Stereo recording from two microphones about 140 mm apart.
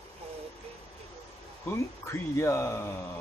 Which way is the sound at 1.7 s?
20° left (ahead or behind).